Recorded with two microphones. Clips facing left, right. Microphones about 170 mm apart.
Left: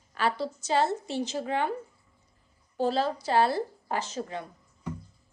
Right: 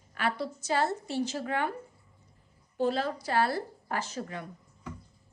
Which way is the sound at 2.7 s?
30° left (ahead or behind).